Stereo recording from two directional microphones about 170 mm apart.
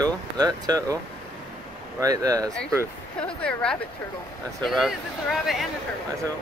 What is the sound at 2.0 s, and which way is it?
Speech, 20° right (ahead or behind).